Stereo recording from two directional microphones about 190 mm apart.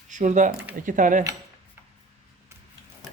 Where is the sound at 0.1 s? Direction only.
40° right (ahead or behind).